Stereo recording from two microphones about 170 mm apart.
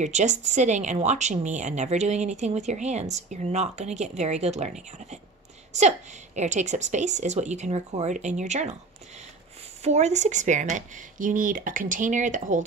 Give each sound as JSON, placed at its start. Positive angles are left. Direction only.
{"t": 0.0, "sound": "speech", "side_deg": -45}
{"t": 9.8, "sound": "speech", "side_deg": -40}